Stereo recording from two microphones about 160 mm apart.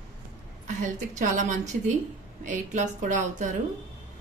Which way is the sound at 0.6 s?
50° right (ahead or behind).